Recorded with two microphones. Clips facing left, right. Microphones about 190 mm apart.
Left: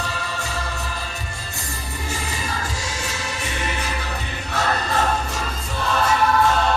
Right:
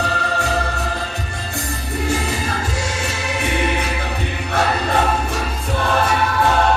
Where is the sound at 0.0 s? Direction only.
60° right (ahead or behind).